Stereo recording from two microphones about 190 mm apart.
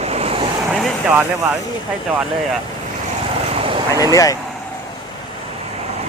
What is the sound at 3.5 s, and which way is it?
Vehicle, 30° right (ahead or behind).